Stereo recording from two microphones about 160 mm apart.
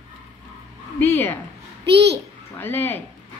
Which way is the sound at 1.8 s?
90° right.